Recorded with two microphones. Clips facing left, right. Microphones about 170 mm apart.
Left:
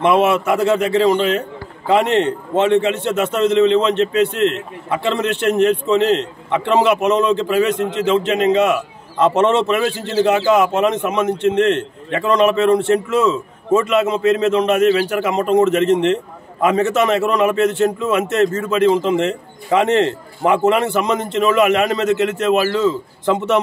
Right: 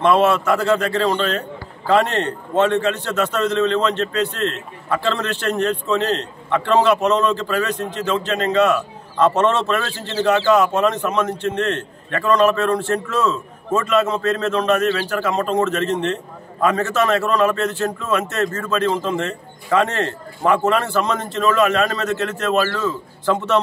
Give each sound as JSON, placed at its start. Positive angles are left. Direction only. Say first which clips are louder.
{"t": 0.0, "sound": "a man's voice", "louder": "left 1 dB", "side_deg": 20}
{"t": 7.7, "sound": "a man's voice", "louder": "left 6 dB", "side_deg": 75}
{"t": 8.0, "sound": "a man's voice", "louder": "left 5 dB", "side_deg": 20}